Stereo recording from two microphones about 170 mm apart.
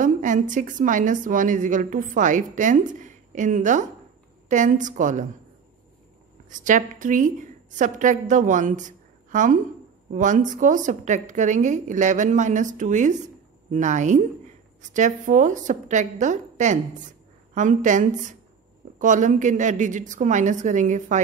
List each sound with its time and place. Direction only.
0.0 s a woman's voice: 50° right (ahead or behind)
6.5 s a woman's voice: 50° right (ahead or behind)